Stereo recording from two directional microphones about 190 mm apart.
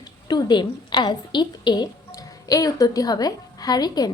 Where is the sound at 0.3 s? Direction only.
20° left (ahead or behind).